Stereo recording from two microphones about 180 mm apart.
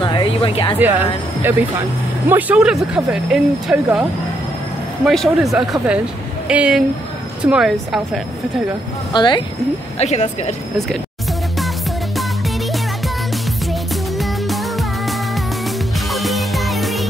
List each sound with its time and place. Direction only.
0.0 s speech: 25° left (ahead or behind)
0.7 s speech: 10° right (ahead or behind)
5.0 s speech: centre (ahead or behind)
9.1 s speech: 25° left (ahead or behind)
9.9 s speech: 40° left (ahead or behind)
14.5 s music: centre (ahead or behind)